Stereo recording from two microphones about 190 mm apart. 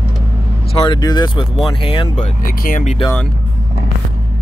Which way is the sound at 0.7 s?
25° left (ahead or behind).